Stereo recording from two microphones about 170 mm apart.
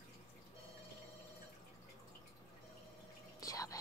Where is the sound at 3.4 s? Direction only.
20° left (ahead or behind).